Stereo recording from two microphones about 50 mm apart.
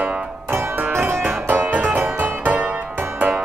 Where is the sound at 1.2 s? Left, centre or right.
Right.